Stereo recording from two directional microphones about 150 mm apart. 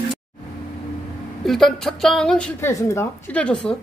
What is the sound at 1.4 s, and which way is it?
A woman's voice, centre (ahead or behind).